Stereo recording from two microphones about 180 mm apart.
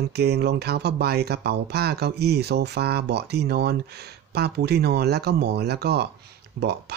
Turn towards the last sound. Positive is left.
turn(degrees=-65)  # may be behind; listen again after turning